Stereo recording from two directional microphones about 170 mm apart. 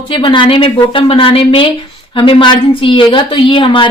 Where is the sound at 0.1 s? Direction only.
30° left (ahead or behind).